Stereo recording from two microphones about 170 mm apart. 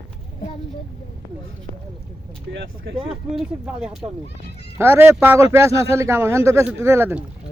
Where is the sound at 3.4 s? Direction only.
5° right (ahead or behind).